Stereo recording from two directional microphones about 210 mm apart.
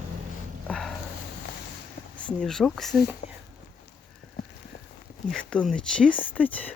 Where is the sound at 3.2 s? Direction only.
35° left (ahead or behind).